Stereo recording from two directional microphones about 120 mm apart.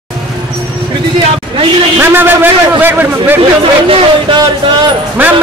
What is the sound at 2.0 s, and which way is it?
A man's voice, 15° right (ahead or behind).